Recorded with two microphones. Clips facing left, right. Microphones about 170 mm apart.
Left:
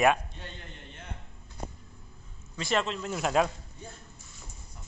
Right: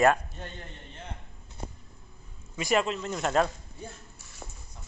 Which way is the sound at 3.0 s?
5° left (ahead or behind).